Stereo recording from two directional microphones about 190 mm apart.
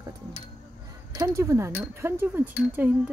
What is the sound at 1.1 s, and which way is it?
Speech, 15° right (ahead or behind).